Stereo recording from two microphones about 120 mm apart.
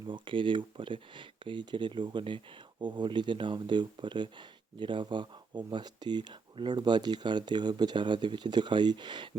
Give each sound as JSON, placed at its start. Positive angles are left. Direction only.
{"t": 0.1, "sound": "speech", "side_deg": -45}